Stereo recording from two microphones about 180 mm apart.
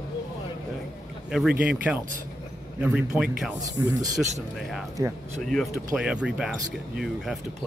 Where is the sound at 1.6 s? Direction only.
10° right (ahead or behind).